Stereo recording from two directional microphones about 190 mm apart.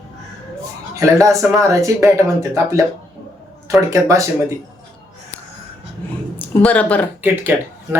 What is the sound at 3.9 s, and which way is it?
Speech, 15° right (ahead or behind).